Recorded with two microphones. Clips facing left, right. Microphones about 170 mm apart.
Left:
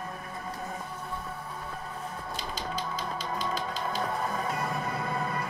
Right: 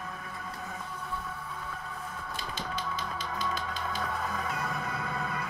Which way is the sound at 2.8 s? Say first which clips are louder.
Left 2 dB; 40° left (ahead or behind).